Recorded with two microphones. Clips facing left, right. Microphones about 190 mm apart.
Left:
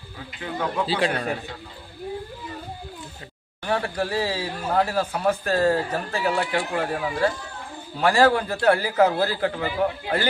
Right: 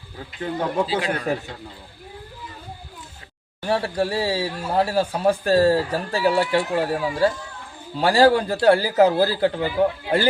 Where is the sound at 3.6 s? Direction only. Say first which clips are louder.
Right 3 dB; 30° right (ahead or behind).